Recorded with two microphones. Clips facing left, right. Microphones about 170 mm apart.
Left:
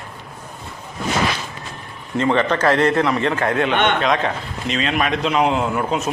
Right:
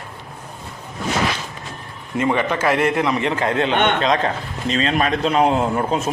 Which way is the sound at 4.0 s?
35° right (ahead or behind).